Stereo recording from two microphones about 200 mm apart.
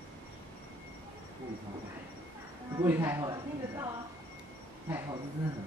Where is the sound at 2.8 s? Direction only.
15° right (ahead or behind).